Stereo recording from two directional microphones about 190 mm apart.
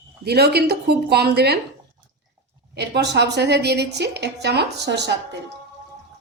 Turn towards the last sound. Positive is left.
turn(degrees=-65)  # may be behind; listen again after turning